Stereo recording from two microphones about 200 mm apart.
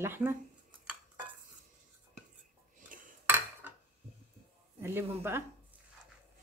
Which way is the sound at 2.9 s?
45° right (ahead or behind).